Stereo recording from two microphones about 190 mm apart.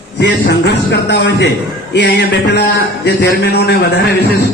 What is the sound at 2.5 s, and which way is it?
A man's voice, 60° left (ahead or behind).